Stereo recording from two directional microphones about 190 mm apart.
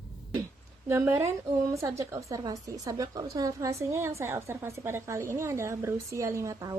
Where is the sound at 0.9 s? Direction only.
15° right (ahead or behind).